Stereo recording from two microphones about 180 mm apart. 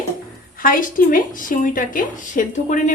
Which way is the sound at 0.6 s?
50° left (ahead or behind).